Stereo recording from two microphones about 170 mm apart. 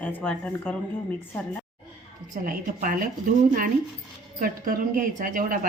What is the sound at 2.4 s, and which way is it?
Speech, 55° right (ahead or behind).